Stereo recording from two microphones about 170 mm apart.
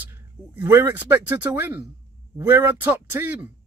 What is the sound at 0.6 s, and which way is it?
A man's voice, 15° right (ahead or behind).